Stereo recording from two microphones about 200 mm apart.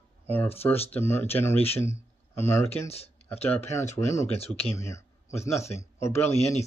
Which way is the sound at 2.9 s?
30° left (ahead or behind).